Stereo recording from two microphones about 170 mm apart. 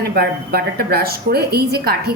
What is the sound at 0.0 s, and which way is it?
A woman's voice, 65° right (ahead or behind).